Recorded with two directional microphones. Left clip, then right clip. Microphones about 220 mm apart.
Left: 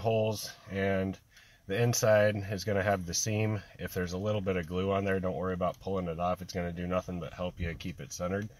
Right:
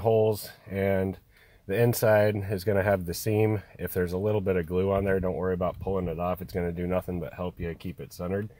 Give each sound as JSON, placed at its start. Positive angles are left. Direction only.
{"t": 0.0, "sound": "speech", "side_deg": -45}